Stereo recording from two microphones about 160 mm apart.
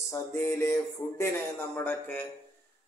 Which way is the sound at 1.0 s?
20° left (ahead or behind).